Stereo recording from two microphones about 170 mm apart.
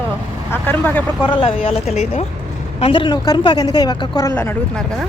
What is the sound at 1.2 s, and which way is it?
Speech, 30° left (ahead or behind).